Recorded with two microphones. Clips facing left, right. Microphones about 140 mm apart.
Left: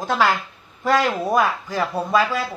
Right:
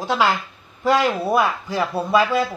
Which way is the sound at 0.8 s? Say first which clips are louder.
Right 1 dB; 15° right (ahead or behind).